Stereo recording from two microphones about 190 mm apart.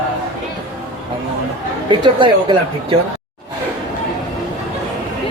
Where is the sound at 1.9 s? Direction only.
25° right (ahead or behind).